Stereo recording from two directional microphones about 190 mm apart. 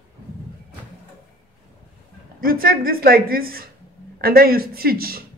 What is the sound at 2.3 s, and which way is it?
Speech, 50° right (ahead or behind).